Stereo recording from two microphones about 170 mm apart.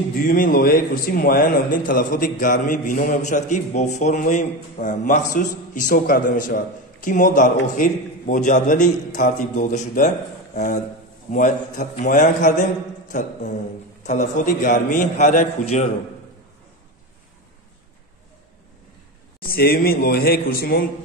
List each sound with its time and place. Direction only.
0.2 s a man's voice: 55° left (ahead or behind)
19.4 s a man's voice: 60° left (ahead or behind)